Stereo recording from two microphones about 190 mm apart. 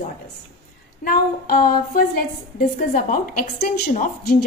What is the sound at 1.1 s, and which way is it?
A woman's voice, 50° left (ahead or behind).